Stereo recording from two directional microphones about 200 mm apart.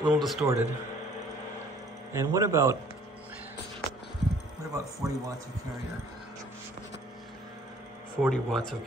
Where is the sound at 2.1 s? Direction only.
15° right (ahead or behind).